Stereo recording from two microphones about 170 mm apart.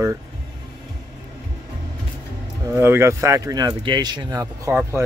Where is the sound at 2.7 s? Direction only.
15° right (ahead or behind).